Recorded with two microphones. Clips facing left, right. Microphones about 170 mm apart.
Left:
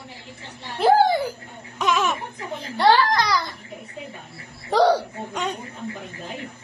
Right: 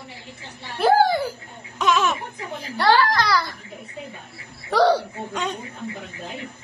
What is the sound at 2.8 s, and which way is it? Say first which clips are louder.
Speech: left 1 dB; 15° left (ahead or behind).